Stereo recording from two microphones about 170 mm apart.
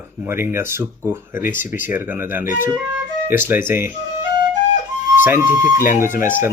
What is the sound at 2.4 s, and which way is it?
Speech, 50° left (ahead or behind).